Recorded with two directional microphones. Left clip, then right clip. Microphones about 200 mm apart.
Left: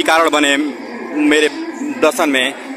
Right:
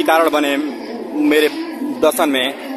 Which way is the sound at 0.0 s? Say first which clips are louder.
Left 1 dB; 10° left (ahead or behind).